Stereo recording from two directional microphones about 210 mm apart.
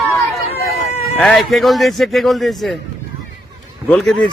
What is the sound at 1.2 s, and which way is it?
Speech, centre (ahead or behind).